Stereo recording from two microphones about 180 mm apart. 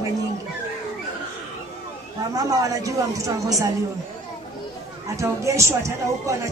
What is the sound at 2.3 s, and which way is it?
A woman's voice, 20° right (ahead or behind).